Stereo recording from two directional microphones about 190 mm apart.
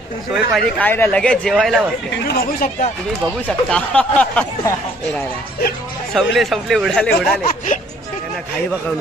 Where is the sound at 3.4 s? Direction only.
5° left (ahead or behind).